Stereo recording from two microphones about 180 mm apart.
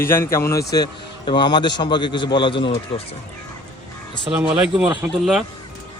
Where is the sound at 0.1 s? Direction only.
15° left (ahead or behind).